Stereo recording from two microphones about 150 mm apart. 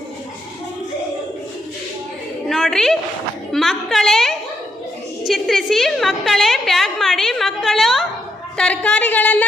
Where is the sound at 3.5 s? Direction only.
Centre (ahead or behind).